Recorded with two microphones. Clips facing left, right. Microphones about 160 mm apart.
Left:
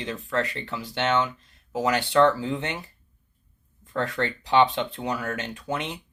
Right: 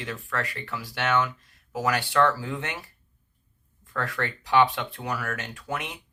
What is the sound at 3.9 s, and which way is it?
Speech, 25° left (ahead or behind).